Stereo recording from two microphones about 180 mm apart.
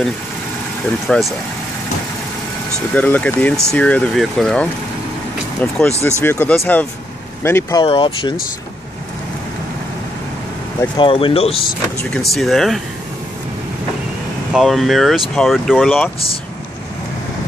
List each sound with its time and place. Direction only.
1.1 s speech: 5° left (ahead or behind)
2.9 s speech: 10° left (ahead or behind)
7.8 s speech: 30° left (ahead or behind)
11.0 s speech: 30° left (ahead or behind)
12.2 s speech: centre (ahead or behind)
14.5 s speech: centre (ahead or behind)